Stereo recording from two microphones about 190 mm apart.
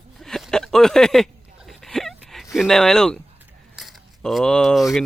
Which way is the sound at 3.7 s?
Centre (ahead or behind).